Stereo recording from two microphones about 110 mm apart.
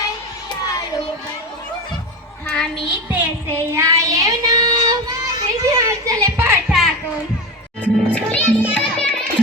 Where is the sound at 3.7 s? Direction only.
25° right (ahead or behind).